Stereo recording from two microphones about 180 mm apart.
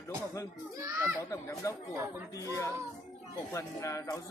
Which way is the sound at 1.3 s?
15° left (ahead or behind).